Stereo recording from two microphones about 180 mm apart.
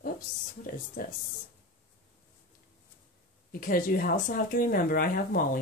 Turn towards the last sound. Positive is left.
turn(degrees=55)  # may be behind; listen again after turning